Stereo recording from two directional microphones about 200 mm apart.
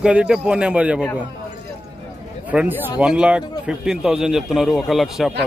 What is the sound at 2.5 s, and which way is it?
A man's voice, 5° right (ahead or behind).